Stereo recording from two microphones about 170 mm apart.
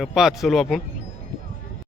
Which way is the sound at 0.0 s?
Centre (ahead or behind).